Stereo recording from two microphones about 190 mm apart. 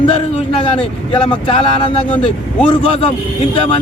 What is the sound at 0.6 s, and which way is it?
Speech, 25° left (ahead or behind).